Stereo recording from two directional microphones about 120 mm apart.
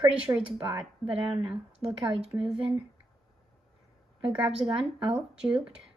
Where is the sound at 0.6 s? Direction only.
15° right (ahead or behind).